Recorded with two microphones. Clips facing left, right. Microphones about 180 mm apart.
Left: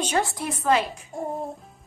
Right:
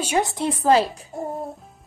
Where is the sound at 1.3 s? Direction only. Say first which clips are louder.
Even; centre (ahead or behind).